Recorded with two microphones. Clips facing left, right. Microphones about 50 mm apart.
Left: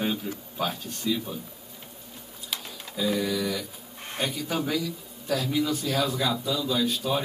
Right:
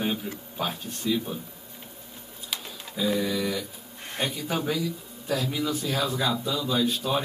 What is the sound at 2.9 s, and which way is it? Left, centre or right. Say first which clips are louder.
Speech: even; centre.